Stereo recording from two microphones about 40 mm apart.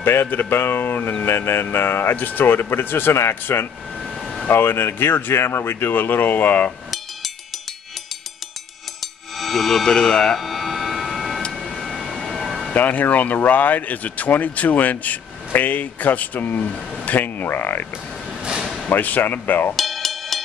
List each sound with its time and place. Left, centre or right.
0.0 s speech: left
1.2 s speech: left
2.1 s speech: left
4.5 s speech: left
9.0 s a sound: centre
9.8 s speech: centre
10.4 s a sound: centre
12.7 s speech: left
18.9 s speech: left
19.7 s music: centre